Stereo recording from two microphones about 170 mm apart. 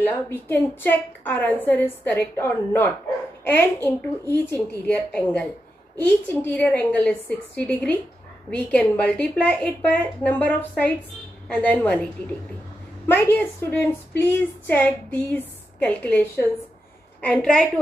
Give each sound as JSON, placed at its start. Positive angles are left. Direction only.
{"t": 0.0, "sound": "a woman's voice", "side_deg": 10}